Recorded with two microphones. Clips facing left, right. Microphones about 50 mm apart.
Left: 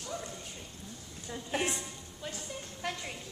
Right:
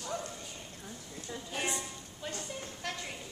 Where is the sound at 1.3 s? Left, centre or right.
Left.